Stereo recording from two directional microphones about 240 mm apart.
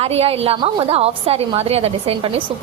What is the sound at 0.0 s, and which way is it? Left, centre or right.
A woman's voice, right.